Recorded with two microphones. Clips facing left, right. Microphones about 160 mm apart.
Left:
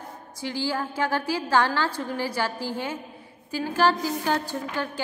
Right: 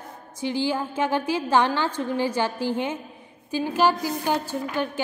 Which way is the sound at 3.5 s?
15° right (ahead or behind).